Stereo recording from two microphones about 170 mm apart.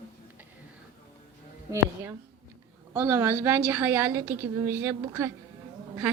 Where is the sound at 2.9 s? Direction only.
15° right (ahead or behind).